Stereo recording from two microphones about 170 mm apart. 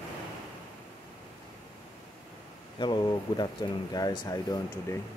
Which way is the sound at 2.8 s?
25° left (ahead or behind).